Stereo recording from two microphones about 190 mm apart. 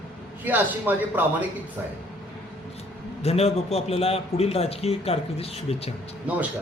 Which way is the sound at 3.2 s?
35° left (ahead or behind).